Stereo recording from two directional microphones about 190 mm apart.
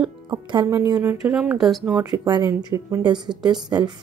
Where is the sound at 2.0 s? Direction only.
20° right (ahead or behind).